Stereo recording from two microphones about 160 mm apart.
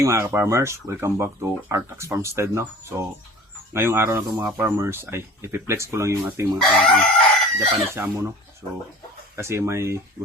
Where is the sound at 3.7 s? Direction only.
15° right (ahead or behind).